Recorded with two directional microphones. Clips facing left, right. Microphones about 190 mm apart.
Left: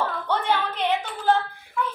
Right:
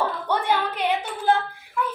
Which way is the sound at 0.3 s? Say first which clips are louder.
Even; 10° right (ahead or behind).